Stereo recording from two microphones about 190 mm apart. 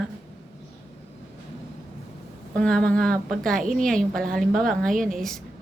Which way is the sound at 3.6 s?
45° right (ahead or behind).